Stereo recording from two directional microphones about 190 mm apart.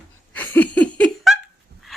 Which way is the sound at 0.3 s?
10° left (ahead or behind).